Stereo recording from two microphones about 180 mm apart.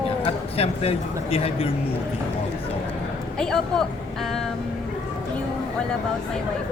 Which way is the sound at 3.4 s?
5° left (ahead or behind).